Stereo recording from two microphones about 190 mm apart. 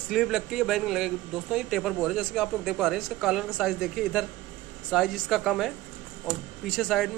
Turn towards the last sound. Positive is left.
turn(degrees=0)  # may be behind; listen again after turning